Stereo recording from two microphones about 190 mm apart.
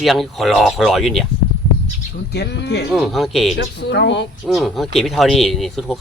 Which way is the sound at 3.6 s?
65° left (ahead or behind).